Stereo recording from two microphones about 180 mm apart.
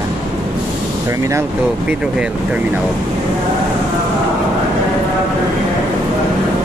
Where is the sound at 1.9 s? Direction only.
5° right (ahead or behind).